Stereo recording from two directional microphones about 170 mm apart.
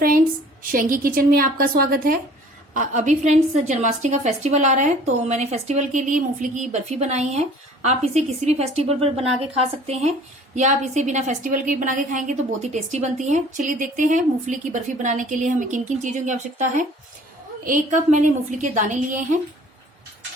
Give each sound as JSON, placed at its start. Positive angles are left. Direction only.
{"t": 0.6, "sound": "a woman's voice", "side_deg": -55}
{"t": 2.7, "sound": "a woman's voice", "side_deg": -45}